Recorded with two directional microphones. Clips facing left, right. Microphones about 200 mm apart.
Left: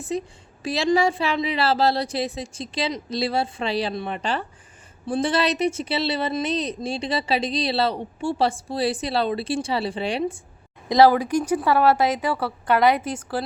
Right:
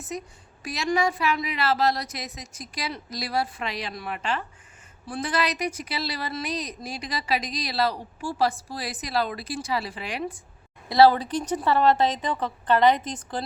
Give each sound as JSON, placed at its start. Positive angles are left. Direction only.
{"t": 0.0, "sound": "speech", "side_deg": 30}
{"t": 10.8, "sound": "speech", "side_deg": 15}